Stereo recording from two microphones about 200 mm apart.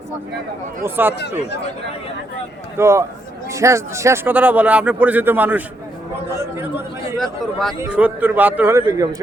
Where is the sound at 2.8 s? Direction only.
15° right (ahead or behind).